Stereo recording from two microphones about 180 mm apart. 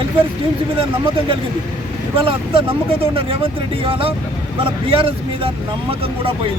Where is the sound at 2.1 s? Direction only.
30° right (ahead or behind).